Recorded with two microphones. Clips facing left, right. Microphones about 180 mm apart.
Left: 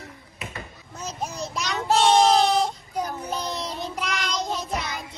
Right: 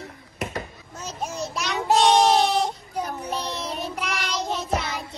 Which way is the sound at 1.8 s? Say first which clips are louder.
Right 2 dB; 15° right (ahead or behind).